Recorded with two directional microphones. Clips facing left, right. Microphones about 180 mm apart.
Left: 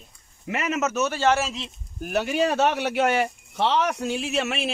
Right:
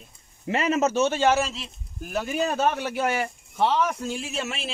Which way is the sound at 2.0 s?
75° left (ahead or behind).